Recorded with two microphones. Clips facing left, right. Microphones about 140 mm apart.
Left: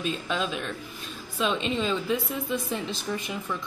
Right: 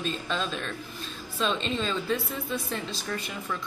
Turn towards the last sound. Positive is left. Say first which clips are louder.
# left 2 dB
turn(degrees=15)  # may be behind; listen again after turning